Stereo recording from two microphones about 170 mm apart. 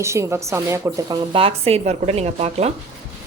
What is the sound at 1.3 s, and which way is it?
Speech, 35° right (ahead or behind).